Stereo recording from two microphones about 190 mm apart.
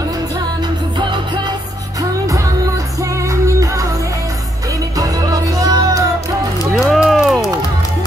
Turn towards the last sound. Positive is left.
turn(degrees=0)  # may be behind; listen again after turning